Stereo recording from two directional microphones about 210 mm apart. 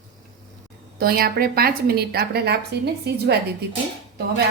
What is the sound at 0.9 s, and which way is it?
A woman's voice, 45° right (ahead or behind).